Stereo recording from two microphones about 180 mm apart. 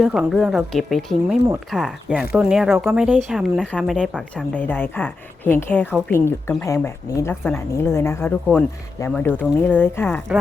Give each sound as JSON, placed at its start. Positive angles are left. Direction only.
{"t": 0.0, "sound": "a woman's voice", "side_deg": -5}